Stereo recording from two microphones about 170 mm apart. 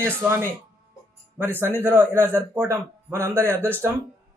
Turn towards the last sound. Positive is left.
turn(degrees=-10)  # may be behind; listen again after turning